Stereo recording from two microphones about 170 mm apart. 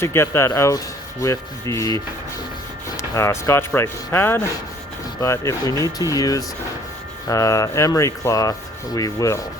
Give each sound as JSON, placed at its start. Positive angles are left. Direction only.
{"t": 0.0, "sound": "speech", "side_deg": 15}
{"t": 3.0, "sound": "speech", "side_deg": 15}